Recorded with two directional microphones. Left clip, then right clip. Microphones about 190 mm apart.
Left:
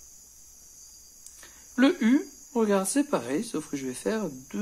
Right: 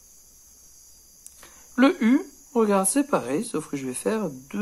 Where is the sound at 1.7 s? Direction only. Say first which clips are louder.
Right 3 dB; 15° right (ahead or behind).